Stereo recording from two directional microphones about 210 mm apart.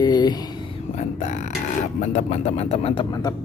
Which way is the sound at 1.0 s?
35° left (ahead or behind).